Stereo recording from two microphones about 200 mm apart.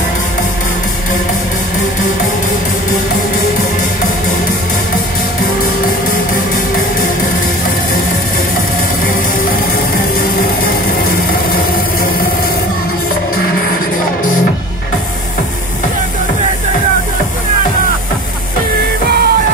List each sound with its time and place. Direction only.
19.0 s music: 50° right (ahead or behind)